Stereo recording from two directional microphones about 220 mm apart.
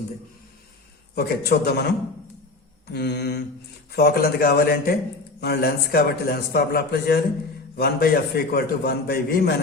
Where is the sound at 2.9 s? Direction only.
50° left (ahead or behind).